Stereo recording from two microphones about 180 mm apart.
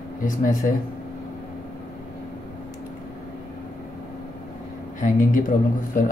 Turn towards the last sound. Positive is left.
turn(degrees=50)  # may be behind; listen again after turning